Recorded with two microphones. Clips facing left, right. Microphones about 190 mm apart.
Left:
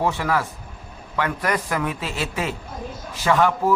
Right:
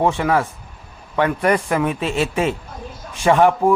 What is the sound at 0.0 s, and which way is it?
A man's voice, 25° right (ahead or behind).